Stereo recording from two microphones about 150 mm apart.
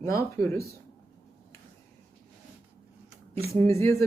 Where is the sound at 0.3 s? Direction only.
20° left (ahead or behind).